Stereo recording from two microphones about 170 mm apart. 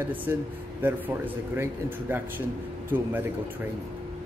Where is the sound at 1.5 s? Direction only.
15° right (ahead or behind).